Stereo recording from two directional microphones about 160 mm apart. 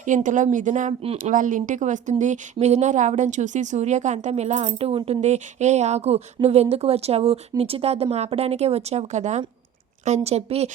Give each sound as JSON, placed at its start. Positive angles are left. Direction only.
{"t": 0.0, "sound": "speech", "side_deg": -55}
{"t": 1.2, "sound": "speech", "side_deg": -55}